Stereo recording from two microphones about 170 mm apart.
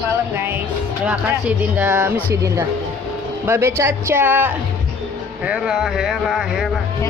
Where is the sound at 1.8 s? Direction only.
10° right (ahead or behind).